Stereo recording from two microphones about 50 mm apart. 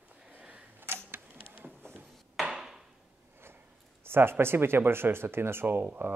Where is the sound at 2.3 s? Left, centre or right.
Centre.